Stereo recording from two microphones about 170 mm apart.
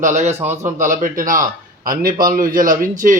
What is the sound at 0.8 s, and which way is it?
A man's voice, 50° right (ahead or behind).